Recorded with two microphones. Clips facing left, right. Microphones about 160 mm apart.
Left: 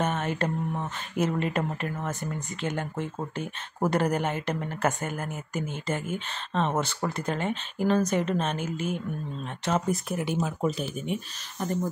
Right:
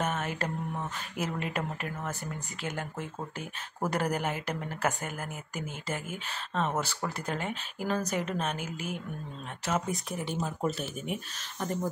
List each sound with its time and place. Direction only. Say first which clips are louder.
0.1 s mantra: left 4 dB; 5° right (ahead or behind)
1.1 s speech: left 8 dB; 5° right (ahead or behind)
2.6 s speech: left 5 dB; 5° right (ahead or behind)
6.5 s speech: left 4 dB; 25° left (ahead or behind)
7.2 s speech: left 5 dB; 10° right (ahead or behind)